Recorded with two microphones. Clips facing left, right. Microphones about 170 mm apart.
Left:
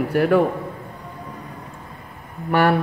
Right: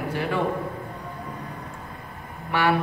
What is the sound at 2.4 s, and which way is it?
Speech, 50° left (ahead or behind).